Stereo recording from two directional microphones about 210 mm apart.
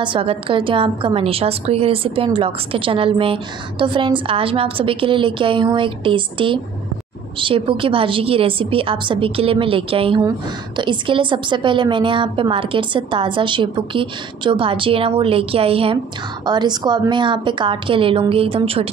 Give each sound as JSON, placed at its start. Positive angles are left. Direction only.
{"t": 0.0, "sound": "a woman's voice", "side_deg": -25}